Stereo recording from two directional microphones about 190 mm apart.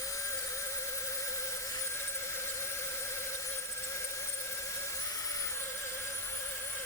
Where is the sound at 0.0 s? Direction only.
15° left (ahead or behind).